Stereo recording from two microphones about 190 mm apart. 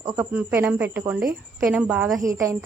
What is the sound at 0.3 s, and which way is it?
A woman's voice, 10° right (ahead or behind).